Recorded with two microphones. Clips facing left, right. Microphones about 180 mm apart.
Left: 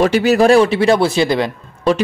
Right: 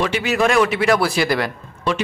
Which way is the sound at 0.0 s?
40° left (ahead or behind).